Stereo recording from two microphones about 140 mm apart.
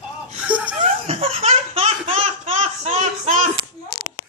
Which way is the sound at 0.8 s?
45° right (ahead or behind).